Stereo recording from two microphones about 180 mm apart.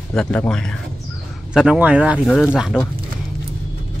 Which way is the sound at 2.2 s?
5° left (ahead or behind).